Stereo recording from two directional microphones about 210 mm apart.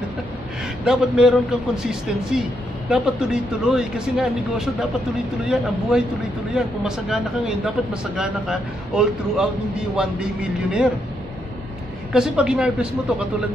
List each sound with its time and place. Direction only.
0.8 s speech: 5° right (ahead or behind)
12.1 s speech: 5° right (ahead or behind)